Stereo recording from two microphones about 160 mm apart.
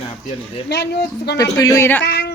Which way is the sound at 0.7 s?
90° left.